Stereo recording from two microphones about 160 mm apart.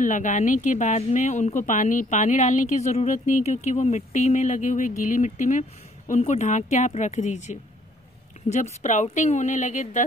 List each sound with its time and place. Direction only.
0.0 s speech: 50° left (ahead or behind)